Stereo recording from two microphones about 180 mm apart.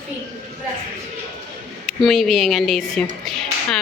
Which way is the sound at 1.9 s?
Centre (ahead or behind).